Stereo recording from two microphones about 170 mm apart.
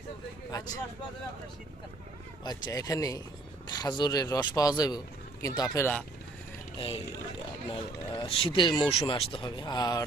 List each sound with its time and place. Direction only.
2.4 s speech: 20° left (ahead or behind)
6.7 s speech: 30° left (ahead or behind)